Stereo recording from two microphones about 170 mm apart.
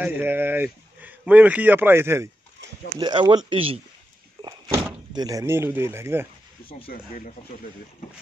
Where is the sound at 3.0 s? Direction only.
25° right (ahead or behind).